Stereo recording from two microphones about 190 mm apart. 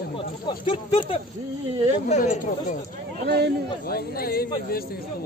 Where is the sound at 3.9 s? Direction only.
50° left (ahead or behind).